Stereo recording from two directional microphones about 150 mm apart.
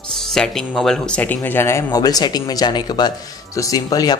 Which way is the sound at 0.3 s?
5° left (ahead or behind).